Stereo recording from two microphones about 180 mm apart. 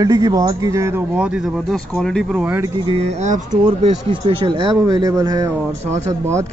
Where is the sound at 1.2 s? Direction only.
5° right (ahead or behind).